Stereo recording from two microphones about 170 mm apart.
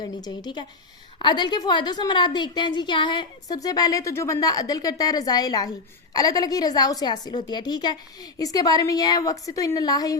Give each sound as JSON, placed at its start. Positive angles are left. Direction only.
{"t": 0.0, "sound": "a child's voice", "side_deg": 25}